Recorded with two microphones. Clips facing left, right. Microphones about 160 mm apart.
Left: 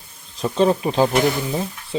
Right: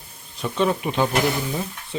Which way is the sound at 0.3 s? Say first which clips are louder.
Left 4 dB; 35° left (ahead or behind).